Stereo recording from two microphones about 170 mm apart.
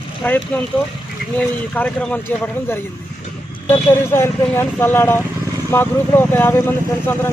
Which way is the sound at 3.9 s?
15° left (ahead or behind).